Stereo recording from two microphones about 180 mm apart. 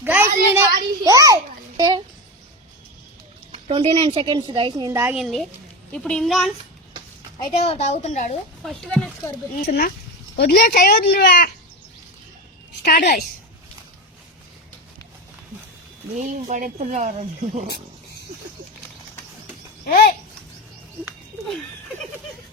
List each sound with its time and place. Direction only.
0.0 s a sound: 10° right (ahead or behind)
1.0 s a child's voice: 20° right (ahead or behind)
3.5 s a woman's voice: 35° right (ahead or behind); by 5.1 s 15° right (ahead or behind)
5.1 s speech: centre (ahead or behind)
7.3 s a woman's voice: 30° left (ahead or behind)
8.6 s speech: 5° left (ahead or behind)
9.6 s speech: 55° left (ahead or behind)
12.8 s speech: 60° left (ahead or behind)
16.2 s speech: 45° right (ahead or behind)
19.8 s a sound: 55° left (ahead or behind)